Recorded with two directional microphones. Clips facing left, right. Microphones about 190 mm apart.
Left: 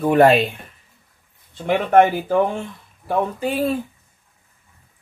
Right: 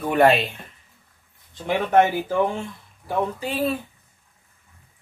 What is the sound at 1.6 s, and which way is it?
Speech, 55° left (ahead or behind).